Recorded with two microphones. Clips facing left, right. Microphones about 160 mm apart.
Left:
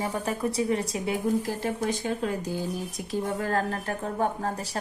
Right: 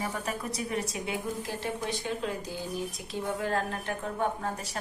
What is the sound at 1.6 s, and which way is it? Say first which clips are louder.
Speech: left 5 dB; 45° left (ahead or behind).